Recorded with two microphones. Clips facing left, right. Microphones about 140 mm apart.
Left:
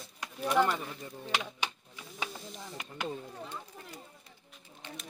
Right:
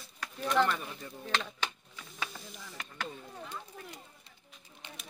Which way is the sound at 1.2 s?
10° left (ahead or behind).